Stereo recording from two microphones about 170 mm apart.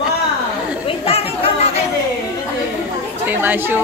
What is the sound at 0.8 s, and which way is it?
Chatter, 35° left (ahead or behind).